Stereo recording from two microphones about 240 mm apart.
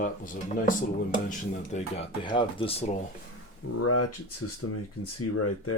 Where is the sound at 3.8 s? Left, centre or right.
Left.